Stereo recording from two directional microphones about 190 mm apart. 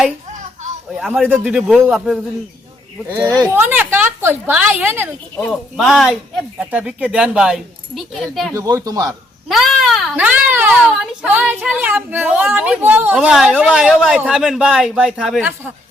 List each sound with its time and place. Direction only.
0.9 s speech: centre (ahead or behind)
3.1 s a child's voice: 20° right (ahead or behind); by 8.5 s centre (ahead or behind)
8.5 s speech: 15° right (ahead or behind)
9.5 s a child's voice: centre (ahead or behind)